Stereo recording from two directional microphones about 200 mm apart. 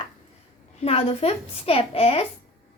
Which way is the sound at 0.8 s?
30° left (ahead or behind).